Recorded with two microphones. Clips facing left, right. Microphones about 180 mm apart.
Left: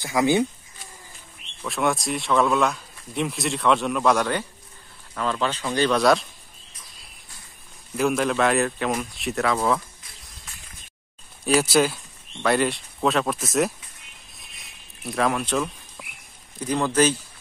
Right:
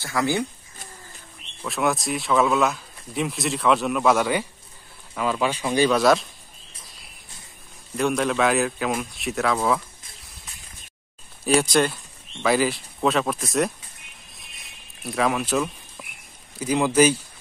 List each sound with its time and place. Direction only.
0.0 s speech: 20° left (ahead or behind)
1.6 s speech: centre (ahead or behind)
7.9 s speech: centre (ahead or behind)
11.4 s speech: 5° left (ahead or behind)
14.3 s a sound: centre (ahead or behind)
16.5 s speech: 10° right (ahead or behind)